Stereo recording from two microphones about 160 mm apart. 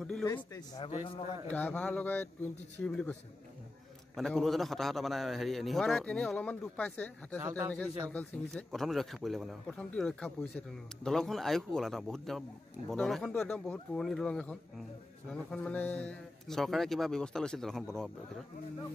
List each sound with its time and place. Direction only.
0.2 s a man's voice: 25° left (ahead or behind)
0.8 s a man's voice: 35° left (ahead or behind)
1.5 s a man's voice: 10° left (ahead or behind)
7.4 s a man's voice: 15° right (ahead or behind)
7.7 s a man's voice: 10° left (ahead or behind)